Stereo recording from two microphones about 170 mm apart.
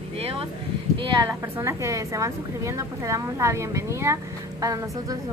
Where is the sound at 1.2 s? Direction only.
15° right (ahead or behind).